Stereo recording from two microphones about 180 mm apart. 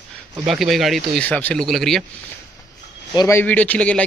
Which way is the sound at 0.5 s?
Centre (ahead or behind).